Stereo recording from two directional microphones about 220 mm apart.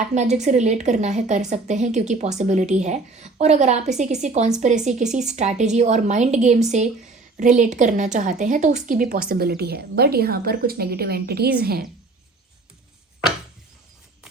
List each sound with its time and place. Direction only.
0.1 s a woman's voice: 30° right (ahead or behind)